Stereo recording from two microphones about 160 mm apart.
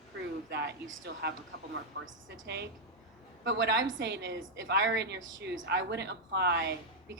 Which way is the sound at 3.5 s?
90° right.